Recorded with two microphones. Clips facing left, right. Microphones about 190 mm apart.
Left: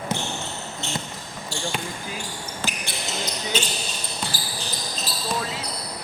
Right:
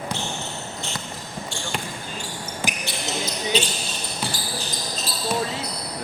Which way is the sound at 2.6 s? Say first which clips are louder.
Right 2 dB; 15° right (ahead or behind).